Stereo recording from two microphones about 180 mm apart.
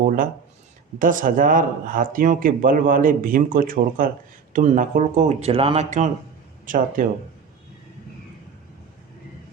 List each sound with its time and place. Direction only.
0.9 s speech: 50° right (ahead or behind)